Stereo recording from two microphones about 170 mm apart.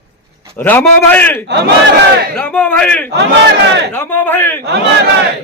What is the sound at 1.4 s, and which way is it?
Battle cry, 90° right.